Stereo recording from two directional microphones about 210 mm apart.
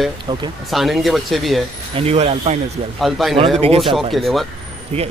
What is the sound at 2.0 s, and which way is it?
Speech, 30° right (ahead or behind).